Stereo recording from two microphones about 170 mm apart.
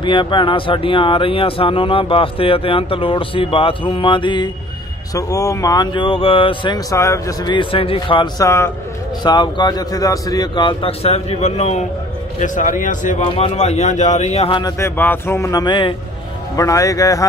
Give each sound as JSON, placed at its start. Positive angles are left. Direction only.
{"t": 0.0, "sound": "speech", "side_deg": 30}
{"t": 8.5, "sound": "a man's voice", "side_deg": 15}
{"t": 14.6, "sound": "speech", "side_deg": 15}